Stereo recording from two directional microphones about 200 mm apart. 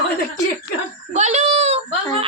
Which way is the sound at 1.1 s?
35° right (ahead or behind).